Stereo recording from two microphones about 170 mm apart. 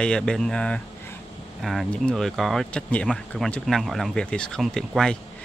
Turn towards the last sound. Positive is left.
turn(degrees=5)  # may be behind; listen again after turning